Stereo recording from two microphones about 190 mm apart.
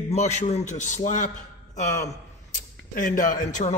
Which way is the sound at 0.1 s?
35° left (ahead or behind).